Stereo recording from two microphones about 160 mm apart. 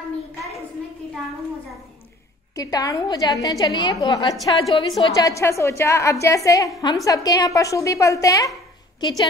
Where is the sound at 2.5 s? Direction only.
20° left (ahead or behind).